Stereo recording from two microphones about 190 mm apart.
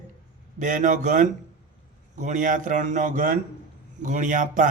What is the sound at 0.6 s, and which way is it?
Speech, 40° right (ahead or behind).